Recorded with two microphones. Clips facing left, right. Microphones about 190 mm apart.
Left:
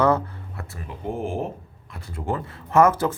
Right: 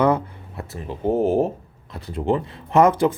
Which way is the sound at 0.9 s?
40° right (ahead or behind).